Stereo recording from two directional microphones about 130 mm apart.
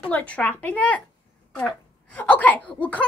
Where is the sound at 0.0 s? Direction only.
10° left (ahead or behind).